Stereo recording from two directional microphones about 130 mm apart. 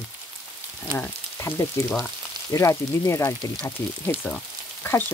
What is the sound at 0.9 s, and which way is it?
Speech, 15° left (ahead or behind).